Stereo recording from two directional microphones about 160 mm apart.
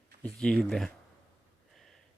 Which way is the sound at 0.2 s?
5° left (ahead or behind).